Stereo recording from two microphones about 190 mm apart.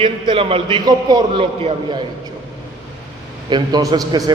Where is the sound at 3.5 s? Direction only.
20° right (ahead or behind).